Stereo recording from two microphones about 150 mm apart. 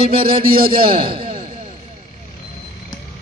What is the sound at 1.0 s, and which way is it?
Speech, 35° right (ahead or behind).